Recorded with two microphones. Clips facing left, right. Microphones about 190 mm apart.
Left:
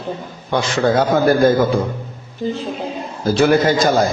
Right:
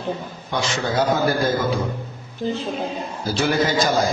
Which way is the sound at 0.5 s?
55° left (ahead or behind).